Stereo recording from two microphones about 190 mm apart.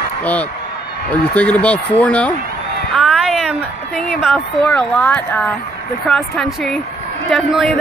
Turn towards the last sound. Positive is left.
turn(degrees=0)  # may be behind; listen again after turning